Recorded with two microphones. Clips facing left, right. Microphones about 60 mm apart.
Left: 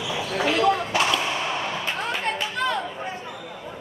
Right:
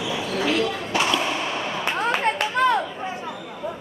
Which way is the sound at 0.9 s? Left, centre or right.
Centre.